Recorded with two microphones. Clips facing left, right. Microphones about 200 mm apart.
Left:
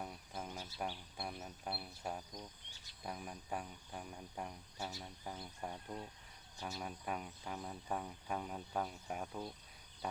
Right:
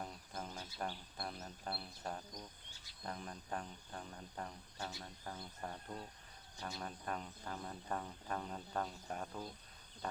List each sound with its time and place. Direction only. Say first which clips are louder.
0.0 s speech: left 1 dB; 5° left (ahead or behind)
3.0 s cricket: even; 10° left (ahead or behind)